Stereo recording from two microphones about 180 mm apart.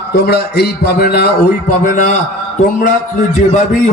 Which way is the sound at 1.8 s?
45° left (ahead or behind).